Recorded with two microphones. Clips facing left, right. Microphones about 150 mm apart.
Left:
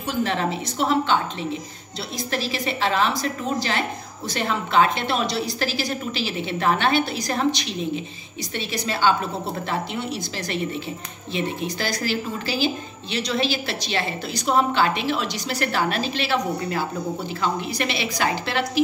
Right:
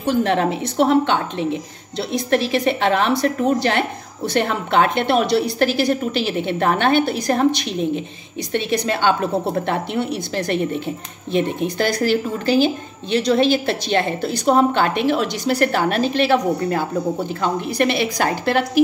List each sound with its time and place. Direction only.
0.0 s a woman's voice: 60° right (ahead or behind)